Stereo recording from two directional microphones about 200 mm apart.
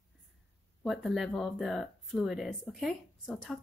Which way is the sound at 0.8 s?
Centre (ahead or behind).